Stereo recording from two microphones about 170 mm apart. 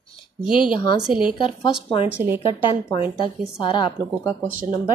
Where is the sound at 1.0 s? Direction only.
5° right (ahead or behind).